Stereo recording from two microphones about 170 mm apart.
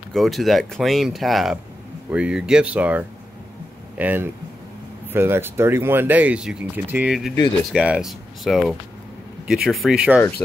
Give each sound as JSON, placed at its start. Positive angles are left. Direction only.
{"t": 0.1, "sound": "speech", "side_deg": 0}